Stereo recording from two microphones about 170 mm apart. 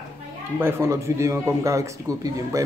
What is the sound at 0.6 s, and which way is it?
Speech, 15° right (ahead or behind).